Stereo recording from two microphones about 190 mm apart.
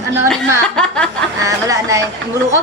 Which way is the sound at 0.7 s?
5° left (ahead or behind).